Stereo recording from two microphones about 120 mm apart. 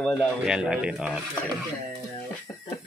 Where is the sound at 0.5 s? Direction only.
5° right (ahead or behind).